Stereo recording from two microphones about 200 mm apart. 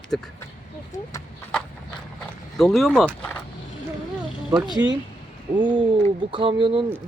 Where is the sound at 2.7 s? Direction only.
Centre (ahead or behind).